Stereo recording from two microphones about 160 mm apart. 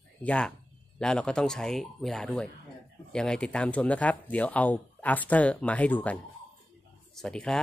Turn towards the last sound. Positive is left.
turn(degrees=5)  # may be behind; listen again after turning